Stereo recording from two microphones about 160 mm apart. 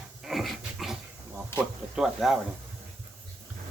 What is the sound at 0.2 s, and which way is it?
Dog, centre (ahead or behind).